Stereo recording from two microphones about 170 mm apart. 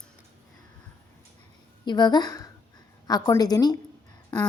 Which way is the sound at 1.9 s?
25° left (ahead or behind).